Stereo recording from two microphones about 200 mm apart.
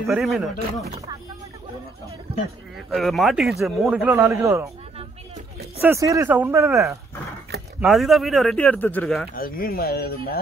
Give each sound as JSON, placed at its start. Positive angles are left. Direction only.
{"t": 0.0, "sound": "a man's voice", "side_deg": 0}
{"t": 2.9, "sound": "a man's voice", "side_deg": 0}
{"t": 5.8, "sound": "speech", "side_deg": -15}
{"t": 7.8, "sound": "a man's voice", "side_deg": 0}
{"t": 9.3, "sound": "speech", "side_deg": 45}